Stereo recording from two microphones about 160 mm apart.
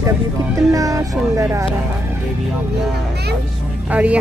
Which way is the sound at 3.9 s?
10° right (ahead or behind).